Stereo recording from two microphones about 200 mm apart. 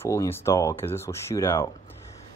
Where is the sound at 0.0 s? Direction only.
15° left (ahead or behind).